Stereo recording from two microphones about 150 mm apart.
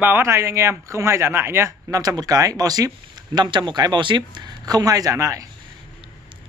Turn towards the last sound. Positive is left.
turn(degrees=-20)  # may be behind; listen again after turning